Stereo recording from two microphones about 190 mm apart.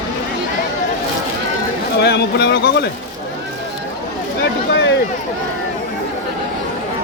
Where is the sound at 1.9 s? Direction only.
60° left (ahead or behind).